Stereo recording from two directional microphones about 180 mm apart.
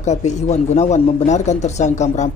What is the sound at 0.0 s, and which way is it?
Speech, 40° left (ahead or behind).